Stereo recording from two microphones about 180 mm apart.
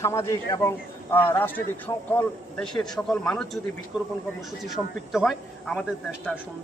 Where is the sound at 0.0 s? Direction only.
15° left (ahead or behind); by 5.8 s centre (ahead or behind).